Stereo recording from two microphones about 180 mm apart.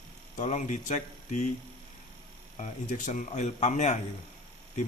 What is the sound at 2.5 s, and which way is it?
A man's voice, 45° left (ahead or behind).